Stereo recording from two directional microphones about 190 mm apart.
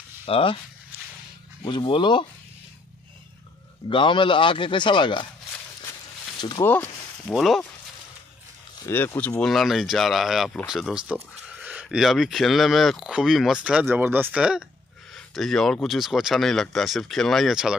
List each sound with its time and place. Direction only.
0.3 s speech: 30° left (ahead or behind)
1.6 s speech: 25° left (ahead or behind)
3.9 s speech: 25° left (ahead or behind)
6.6 s speech: 10° left (ahead or behind)
8.8 s speech: 10° left (ahead or behind)
9.4 s speech: centre (ahead or behind)